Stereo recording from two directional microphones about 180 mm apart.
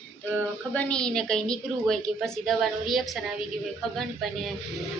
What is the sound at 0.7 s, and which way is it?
A woman's voice, 5° left (ahead or behind).